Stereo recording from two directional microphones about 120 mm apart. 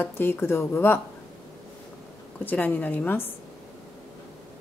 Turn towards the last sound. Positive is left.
turn(degrees=15)  # may be behind; listen again after turning